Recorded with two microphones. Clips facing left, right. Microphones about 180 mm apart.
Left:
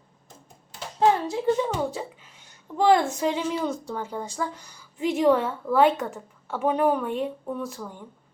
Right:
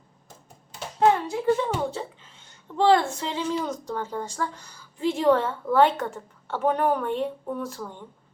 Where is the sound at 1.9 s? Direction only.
10° left (ahead or behind).